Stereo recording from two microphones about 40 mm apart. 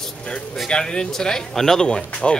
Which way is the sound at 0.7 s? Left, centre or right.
Left.